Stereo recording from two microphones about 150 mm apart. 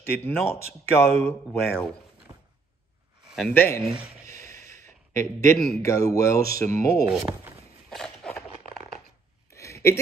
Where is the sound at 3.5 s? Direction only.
15° left (ahead or behind).